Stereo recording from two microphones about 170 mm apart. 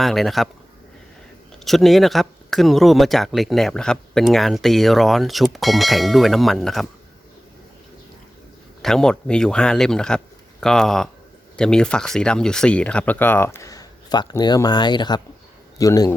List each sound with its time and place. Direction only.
0.0 s speech: centre (ahead or behind)
1.6 s speech: centre (ahead or behind)
8.8 s a man's voice: 5° left (ahead or behind); by 16.1 s 20° left (ahead or behind)